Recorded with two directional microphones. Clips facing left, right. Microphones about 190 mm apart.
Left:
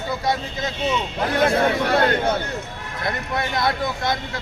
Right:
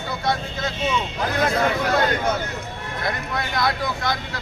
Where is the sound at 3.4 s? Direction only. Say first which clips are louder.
Left 2 dB; 25° left (ahead or behind).